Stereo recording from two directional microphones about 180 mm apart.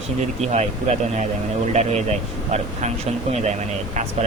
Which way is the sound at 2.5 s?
40° right (ahead or behind).